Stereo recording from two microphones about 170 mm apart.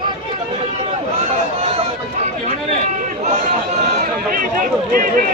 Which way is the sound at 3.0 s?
55° right (ahead or behind).